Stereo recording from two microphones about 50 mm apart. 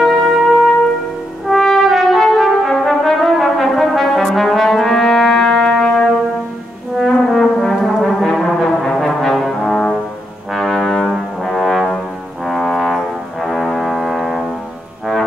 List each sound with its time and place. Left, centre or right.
0.0 s music: centre
1.5 s brass instrument: centre
7.0 s brass instrument: centre
9.7 s music: centre
10.5 s brass instrument: centre
12.4 s music: centre